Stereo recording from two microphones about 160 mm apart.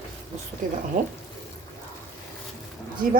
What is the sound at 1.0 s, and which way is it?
Speech, 55° right (ahead or behind).